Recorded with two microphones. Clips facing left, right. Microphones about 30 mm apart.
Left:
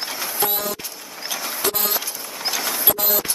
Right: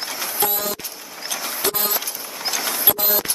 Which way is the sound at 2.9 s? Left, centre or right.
Right.